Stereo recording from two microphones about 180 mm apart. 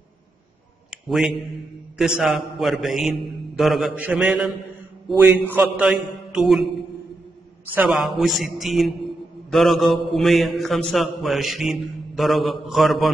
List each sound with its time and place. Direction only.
0.8 s a sound: centre (ahead or behind)
2.0 s a man's voice: centre (ahead or behind)
7.7 s a man's voice: 5° right (ahead or behind)